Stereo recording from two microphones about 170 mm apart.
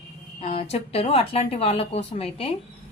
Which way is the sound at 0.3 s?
35° left (ahead or behind).